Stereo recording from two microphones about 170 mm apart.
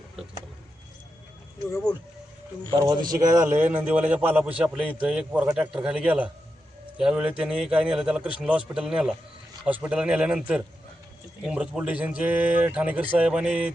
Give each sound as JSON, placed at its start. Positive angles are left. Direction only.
{"t": 2.6, "sound": "speech", "side_deg": -25}
{"t": 3.4, "sound": "a man's voice", "side_deg": -10}